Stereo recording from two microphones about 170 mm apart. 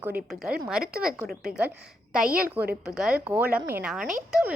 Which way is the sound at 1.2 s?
65° right (ahead or behind).